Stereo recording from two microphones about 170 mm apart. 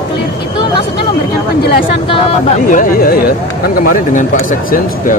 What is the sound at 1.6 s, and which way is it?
Speech, 55° left (ahead or behind).